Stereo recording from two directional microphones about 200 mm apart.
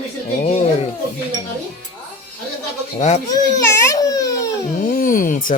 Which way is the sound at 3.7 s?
15° left (ahead or behind).